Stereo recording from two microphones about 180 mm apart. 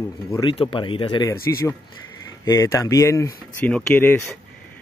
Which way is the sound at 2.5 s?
15° left (ahead or behind).